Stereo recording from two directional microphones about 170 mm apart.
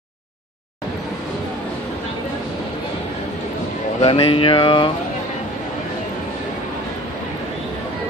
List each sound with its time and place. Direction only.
4.0 s speech: 30° left (ahead or behind)